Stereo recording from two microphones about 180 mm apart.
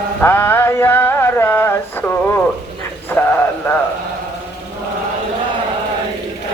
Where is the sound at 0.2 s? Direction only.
10° left (ahead or behind).